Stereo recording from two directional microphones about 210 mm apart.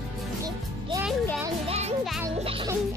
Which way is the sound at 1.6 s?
30° right (ahead or behind).